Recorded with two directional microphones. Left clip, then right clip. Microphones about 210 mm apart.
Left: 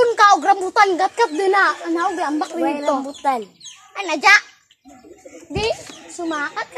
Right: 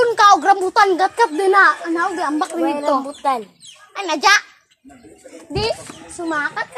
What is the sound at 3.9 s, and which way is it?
Speech, 15° right (ahead or behind).